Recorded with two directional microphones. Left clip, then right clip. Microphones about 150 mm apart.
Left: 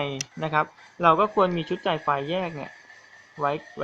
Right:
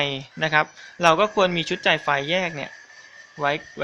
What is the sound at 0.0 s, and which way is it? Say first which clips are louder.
Speech: right 5 dB; 10° right (ahead or behind).